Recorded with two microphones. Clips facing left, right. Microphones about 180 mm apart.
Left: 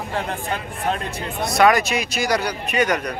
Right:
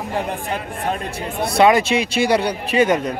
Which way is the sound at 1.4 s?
30° right (ahead or behind).